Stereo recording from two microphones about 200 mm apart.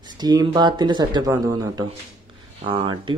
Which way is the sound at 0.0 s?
20° right (ahead or behind).